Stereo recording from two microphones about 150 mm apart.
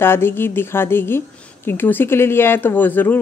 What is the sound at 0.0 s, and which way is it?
Speech, 15° left (ahead or behind).